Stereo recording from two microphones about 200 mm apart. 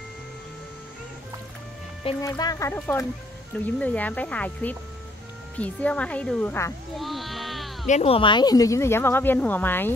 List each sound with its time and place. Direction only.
2.2 s speech: 20° left (ahead or behind); by 7.7 s centre (ahead or behind)
7.8 s speech: 35° left (ahead or behind); by 9.9 s 10° left (ahead or behind)